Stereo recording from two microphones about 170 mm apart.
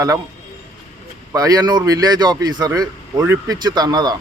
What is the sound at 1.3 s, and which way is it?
Speech, 20° right (ahead or behind).